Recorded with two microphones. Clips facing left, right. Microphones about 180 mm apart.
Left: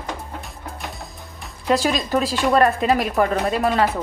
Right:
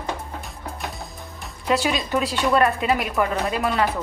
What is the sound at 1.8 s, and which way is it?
Speech, 40° left (ahead or behind).